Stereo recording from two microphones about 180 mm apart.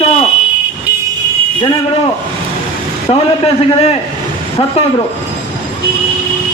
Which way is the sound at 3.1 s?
30° left (ahead or behind).